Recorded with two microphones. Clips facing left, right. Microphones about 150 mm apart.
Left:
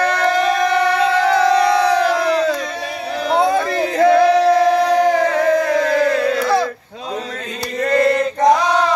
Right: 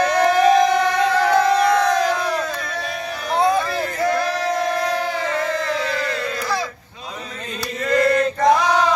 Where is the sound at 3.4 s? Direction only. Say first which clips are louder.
Left 1 dB; 60° left (ahead or behind).